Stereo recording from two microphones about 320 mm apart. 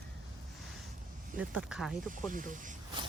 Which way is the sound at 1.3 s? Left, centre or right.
Centre.